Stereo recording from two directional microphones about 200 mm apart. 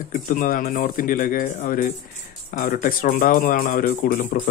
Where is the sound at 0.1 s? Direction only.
45° left (ahead or behind).